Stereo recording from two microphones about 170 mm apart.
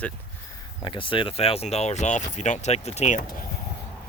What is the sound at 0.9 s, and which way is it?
Speech, 30° left (ahead or behind).